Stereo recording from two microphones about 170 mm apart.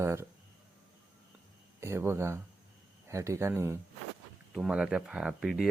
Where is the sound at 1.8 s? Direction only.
15° right (ahead or behind).